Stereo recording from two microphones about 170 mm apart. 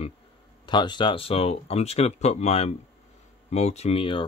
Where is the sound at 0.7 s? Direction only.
25° left (ahead or behind).